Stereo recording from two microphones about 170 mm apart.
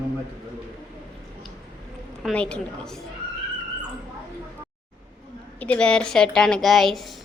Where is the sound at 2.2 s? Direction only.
5° left (ahead or behind).